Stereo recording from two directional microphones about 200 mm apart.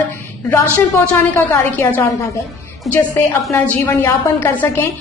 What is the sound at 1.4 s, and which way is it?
Speech, 10° left (ahead or behind).